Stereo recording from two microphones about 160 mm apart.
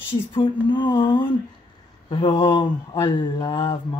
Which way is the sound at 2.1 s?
30° left (ahead or behind).